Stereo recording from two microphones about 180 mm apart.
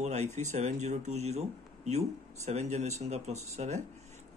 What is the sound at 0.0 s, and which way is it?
Speech, 40° right (ahead or behind).